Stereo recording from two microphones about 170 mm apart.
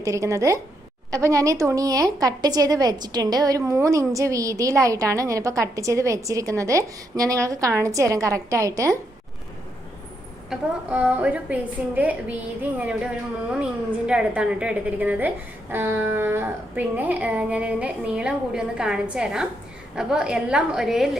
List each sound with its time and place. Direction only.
0.0 s a woman's voice: 20° right (ahead or behind)
10.5 s a woman's voice: 5° right (ahead or behind)
14.1 s a woman's voice: 5° right (ahead or behind)